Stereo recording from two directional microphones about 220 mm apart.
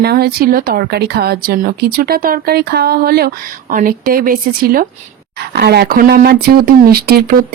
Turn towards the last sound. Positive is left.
turn(degrees=-45)  # may be behind; listen again after turning